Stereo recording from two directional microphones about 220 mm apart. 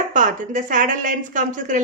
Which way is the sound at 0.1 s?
35° right (ahead or behind).